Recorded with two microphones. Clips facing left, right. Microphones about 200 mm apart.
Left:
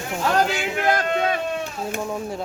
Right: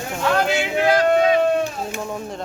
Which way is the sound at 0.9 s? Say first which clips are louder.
Right 6 dB; 50° left (ahead or behind).